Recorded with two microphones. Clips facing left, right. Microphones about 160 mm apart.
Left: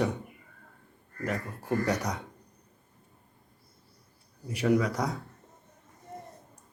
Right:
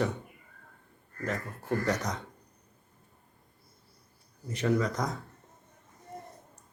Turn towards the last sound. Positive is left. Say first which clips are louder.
# left 2 dB
turn(degrees=10)  # may be behind; listen again after turning